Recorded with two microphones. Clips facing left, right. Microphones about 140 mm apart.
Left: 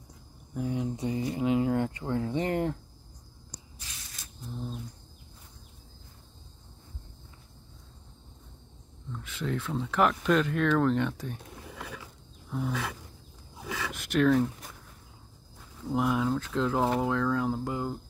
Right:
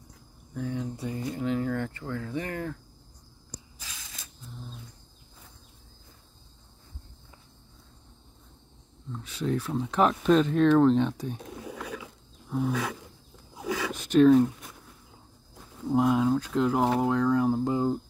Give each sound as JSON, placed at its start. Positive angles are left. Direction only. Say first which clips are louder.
{"t": 0.6, "sound": "speech", "louder": "left 2 dB", "side_deg": 15}
{"t": 9.1, "sound": "speech", "louder": "right 4 dB", "side_deg": -15}
{"t": 12.4, "sound": "wild animals", "louder": "right 4 dB", "side_deg": -10}
{"t": 13.7, "sound": "a sound", "louder": "right 5 dB", "side_deg": -15}
{"t": 15.9, "sound": "speech", "louder": "right 4 dB", "side_deg": -20}